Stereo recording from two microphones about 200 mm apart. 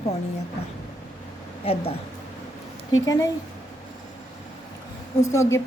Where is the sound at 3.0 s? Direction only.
15° left (ahead or behind).